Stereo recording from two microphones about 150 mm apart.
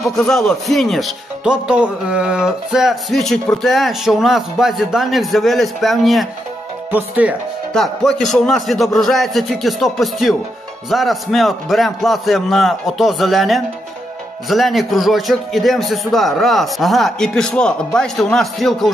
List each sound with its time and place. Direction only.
0.0 s speech: 5° left (ahead or behind)
6.9 s speech: 10° right (ahead or behind)
7.7 s speech: centre (ahead or behind)